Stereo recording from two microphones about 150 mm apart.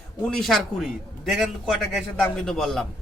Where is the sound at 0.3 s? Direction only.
Centre (ahead or behind).